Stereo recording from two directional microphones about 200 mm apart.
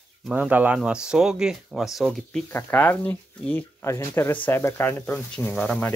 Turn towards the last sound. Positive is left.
turn(degrees=5)  # may be behind; listen again after turning